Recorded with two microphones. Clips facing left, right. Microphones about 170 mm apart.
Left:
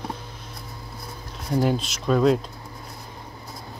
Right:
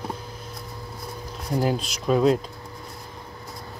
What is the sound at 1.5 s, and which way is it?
Speech, 5° right (ahead or behind).